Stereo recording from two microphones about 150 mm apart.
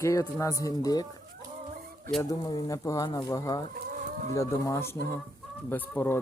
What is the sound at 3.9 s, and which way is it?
Chicken, 55° right (ahead or behind).